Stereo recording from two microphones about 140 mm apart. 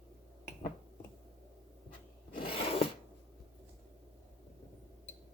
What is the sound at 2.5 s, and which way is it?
Filing, 45° left (ahead or behind).